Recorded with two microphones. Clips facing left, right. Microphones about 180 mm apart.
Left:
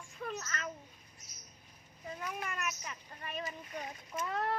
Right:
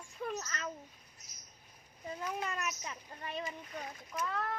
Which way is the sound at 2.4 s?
20° right (ahead or behind).